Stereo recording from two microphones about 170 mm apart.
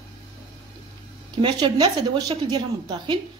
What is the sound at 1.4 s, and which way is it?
A woman's voice, 30° right (ahead or behind).